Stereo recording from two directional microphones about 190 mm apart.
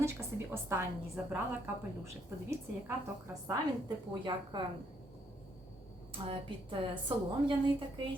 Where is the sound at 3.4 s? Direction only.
20° right (ahead or behind).